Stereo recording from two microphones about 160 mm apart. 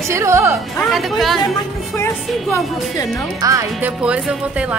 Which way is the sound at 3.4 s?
20° right (ahead or behind).